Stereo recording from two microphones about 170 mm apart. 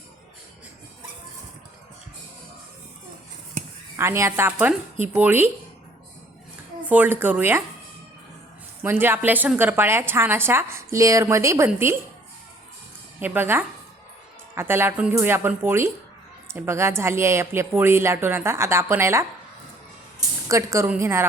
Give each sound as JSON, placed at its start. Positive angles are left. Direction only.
{"t": 3.9, "sound": "speech", "side_deg": -15}
{"t": 6.8, "sound": "speech", "side_deg": -10}
{"t": 8.8, "sound": "speech", "side_deg": -15}
{"t": 13.1, "sound": "a woman's voice", "side_deg": -10}